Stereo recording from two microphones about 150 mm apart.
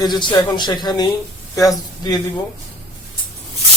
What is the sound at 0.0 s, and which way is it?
Speech, 30° left (ahead or behind).